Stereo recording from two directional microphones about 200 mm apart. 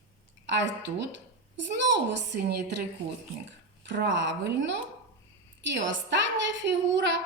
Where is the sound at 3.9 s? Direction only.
60° right (ahead or behind).